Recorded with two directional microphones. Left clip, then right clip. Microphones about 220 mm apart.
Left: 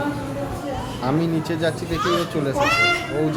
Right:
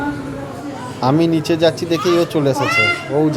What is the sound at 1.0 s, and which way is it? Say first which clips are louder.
Speech: right 9 dB; 35° right (ahead or behind).